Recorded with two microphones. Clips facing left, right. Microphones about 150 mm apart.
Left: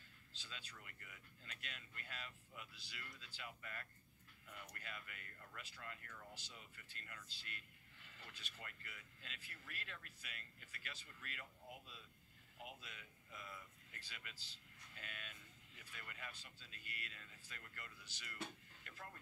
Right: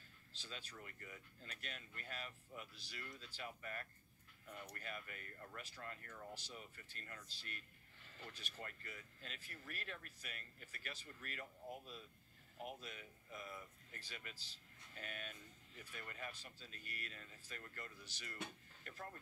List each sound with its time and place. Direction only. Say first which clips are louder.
0.4 s speech: right 5 dB; 45° right (ahead or behind)